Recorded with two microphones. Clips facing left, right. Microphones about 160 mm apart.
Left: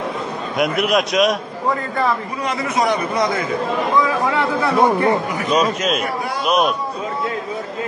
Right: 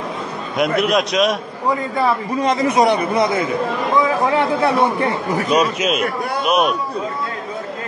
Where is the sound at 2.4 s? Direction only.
30° right (ahead or behind).